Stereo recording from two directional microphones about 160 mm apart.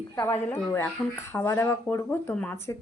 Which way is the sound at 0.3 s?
10° left (ahead or behind).